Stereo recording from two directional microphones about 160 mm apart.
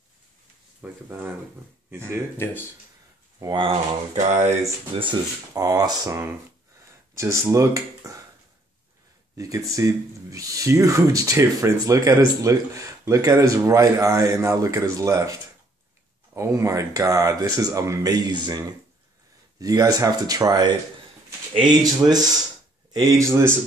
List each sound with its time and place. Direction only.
0.8 s speech: 5° right (ahead or behind)
2.3 s speech: 15° left (ahead or behind)
3.3 s speech: 30° right (ahead or behind)
4.2 s speech: 45° right (ahead or behind)
4.9 s speech: 25° right (ahead or behind)
9.4 s speech: 20° right (ahead or behind)
16.3 s speech: 20° right (ahead or behind)